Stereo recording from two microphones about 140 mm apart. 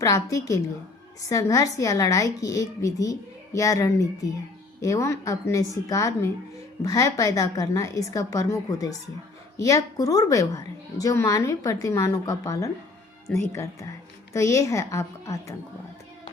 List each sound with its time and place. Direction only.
0.0 s a woman's voice: 25° left (ahead or behind)